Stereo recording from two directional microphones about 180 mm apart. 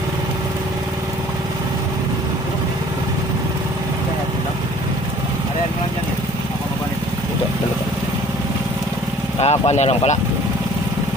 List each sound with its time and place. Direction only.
9.4 s speech: 35° left (ahead or behind)